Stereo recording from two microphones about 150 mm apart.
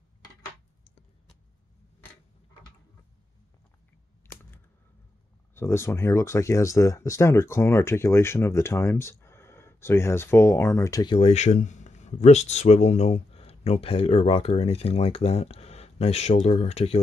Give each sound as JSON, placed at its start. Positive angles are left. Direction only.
{"t": 5.5, "sound": "speech", "side_deg": 15}
{"t": 11.1, "sound": "speech", "side_deg": 45}